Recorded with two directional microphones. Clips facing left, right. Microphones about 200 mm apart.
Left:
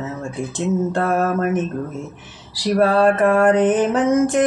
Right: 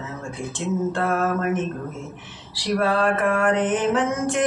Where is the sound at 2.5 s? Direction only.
40° left (ahead or behind).